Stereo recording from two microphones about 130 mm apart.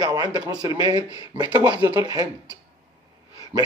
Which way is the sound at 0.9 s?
30° left (ahead or behind).